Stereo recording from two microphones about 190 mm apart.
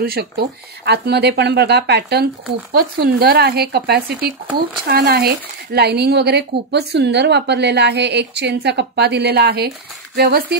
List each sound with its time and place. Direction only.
0.0 s speech: 55° right (ahead or behind)